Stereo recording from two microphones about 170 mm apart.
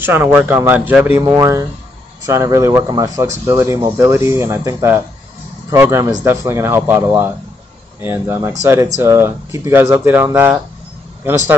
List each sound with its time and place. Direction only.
0.0 s speech: 10° right (ahead or behind)